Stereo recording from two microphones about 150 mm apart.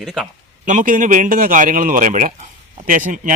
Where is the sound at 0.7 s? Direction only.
60° right (ahead or behind).